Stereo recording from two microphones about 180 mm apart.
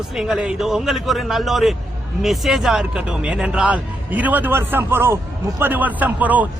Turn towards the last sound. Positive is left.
turn(degrees=-10)  # may be behind; listen again after turning